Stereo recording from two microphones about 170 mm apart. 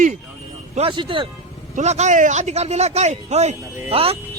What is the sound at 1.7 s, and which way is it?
A man's voice, 40° right (ahead or behind).